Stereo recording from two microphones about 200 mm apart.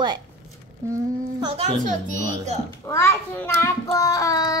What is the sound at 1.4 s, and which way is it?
Speech, 25° right (ahead or behind).